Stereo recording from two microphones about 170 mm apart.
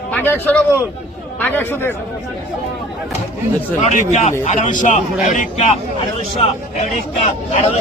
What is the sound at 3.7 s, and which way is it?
Speech, 45° left (ahead or behind).